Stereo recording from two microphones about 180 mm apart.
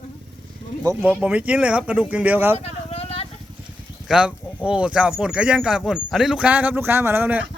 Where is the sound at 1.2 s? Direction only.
5° right (ahead or behind).